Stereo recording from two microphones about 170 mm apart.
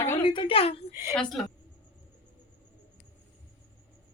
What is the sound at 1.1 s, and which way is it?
Speech, 5° left (ahead or behind).